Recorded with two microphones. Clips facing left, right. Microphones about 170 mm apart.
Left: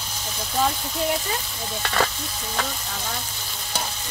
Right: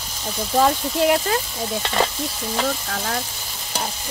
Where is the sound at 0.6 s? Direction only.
70° right (ahead or behind).